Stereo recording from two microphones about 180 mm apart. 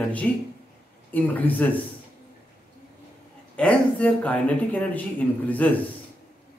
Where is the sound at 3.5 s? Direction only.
5° left (ahead or behind).